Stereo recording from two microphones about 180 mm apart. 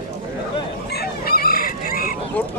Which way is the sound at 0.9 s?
60° left (ahead or behind).